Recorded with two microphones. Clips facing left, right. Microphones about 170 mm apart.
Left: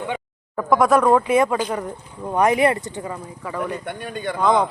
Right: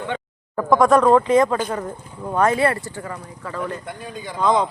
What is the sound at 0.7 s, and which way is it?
Speech, 5° left (ahead or behind).